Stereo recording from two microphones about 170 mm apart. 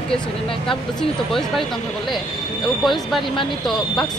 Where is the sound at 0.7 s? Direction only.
Centre (ahead or behind).